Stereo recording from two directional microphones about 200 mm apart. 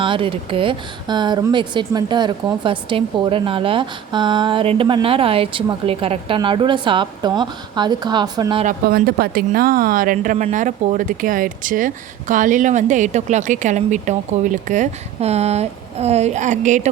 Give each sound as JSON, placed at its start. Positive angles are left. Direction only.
{"t": 0.0, "sound": "a woman's voice", "side_deg": -25}
{"t": 8.6, "sound": "a woman's voice", "side_deg": -45}